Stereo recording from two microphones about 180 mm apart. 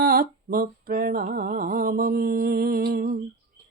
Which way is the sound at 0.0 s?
55° right (ahead or behind).